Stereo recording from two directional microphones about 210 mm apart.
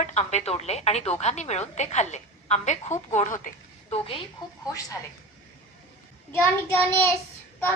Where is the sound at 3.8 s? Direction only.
25° left (ahead or behind).